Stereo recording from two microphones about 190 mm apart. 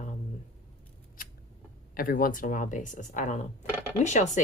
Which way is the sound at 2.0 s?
50° left (ahead or behind).